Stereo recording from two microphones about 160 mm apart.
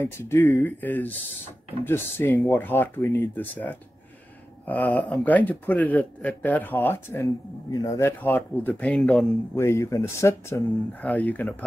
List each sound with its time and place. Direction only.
0.0 s speech: 15° left (ahead or behind)
9.6 s speech: 15° left (ahead or behind)
11.0 s speech: 5° left (ahead or behind)